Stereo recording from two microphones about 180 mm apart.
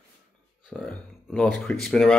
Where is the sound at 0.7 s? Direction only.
5° left (ahead or behind).